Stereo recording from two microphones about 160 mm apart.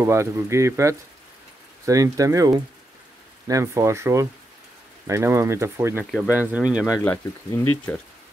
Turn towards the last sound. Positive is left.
turn(degrees=10)  # may be behind; listen again after turning